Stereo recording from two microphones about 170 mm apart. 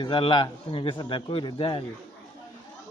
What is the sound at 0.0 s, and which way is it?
A man's voice, 30° left (ahead or behind).